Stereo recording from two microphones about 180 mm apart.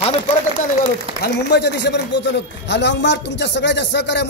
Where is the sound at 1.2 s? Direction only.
70° left (ahead or behind).